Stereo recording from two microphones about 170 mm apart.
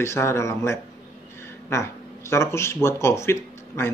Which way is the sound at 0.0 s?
15° left (ahead or behind).